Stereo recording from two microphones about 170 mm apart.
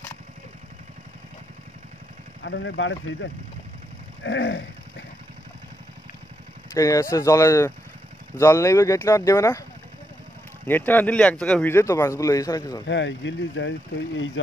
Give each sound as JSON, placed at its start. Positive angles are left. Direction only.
{"t": 2.4, "sound": "speech", "side_deg": 90}
{"t": 6.7, "sound": "a man's voice", "side_deg": 20}
{"t": 10.7, "sound": "a man's voice", "side_deg": 10}
{"t": 12.8, "sound": "speech", "side_deg": 90}